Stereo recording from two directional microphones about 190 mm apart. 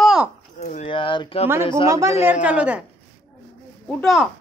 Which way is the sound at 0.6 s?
40° left (ahead or behind).